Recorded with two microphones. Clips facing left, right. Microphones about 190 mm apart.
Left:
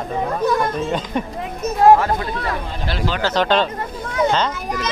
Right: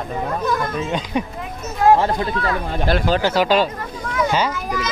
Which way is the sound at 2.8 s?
50° right (ahead or behind).